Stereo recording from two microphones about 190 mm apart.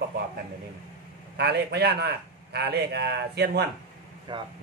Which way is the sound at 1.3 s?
60° right (ahead or behind).